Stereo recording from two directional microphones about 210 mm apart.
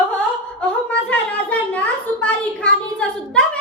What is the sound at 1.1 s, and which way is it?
A woman's voice, 5° left (ahead or behind).